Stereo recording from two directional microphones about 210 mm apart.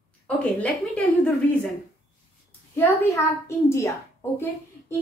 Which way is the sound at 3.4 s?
15° left (ahead or behind).